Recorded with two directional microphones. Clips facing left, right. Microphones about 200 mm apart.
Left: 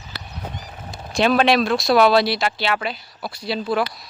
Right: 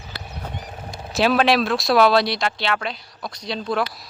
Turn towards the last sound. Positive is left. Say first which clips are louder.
# left 2 dB
turn(degrees=5)  # may be behind; listen again after turning